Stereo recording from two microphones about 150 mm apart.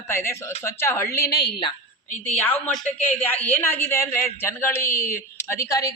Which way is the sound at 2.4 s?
15° left (ahead or behind).